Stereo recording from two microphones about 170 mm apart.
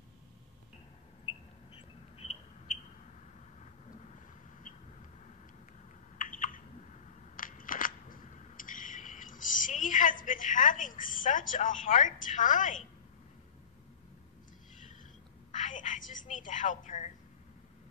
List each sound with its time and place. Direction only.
1.8 s bird: 40° left (ahead or behind)
6.1 s camera: 50° left (ahead or behind)
15.5 s telephone: 45° left (ahead or behind)